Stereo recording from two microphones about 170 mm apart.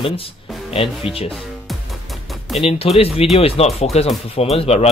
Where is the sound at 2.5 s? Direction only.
35° left (ahead or behind).